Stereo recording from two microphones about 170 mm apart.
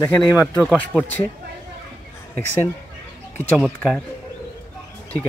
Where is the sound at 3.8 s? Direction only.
5° left (ahead or behind).